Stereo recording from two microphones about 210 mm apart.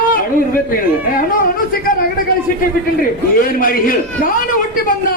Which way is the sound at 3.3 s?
40° left (ahead or behind).